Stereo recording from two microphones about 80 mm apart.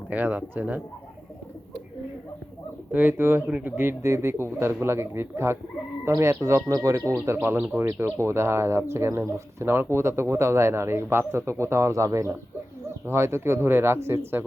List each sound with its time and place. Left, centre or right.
0.1 s speech: right
2.9 s speech: right
7.4 s speech: right